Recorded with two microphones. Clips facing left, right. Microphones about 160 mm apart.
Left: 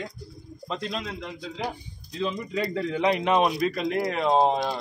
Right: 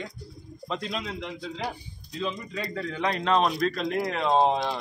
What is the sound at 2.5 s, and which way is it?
Speech, 20° left (ahead or behind).